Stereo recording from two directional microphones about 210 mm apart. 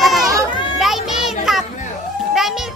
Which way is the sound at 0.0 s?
Centre (ahead or behind).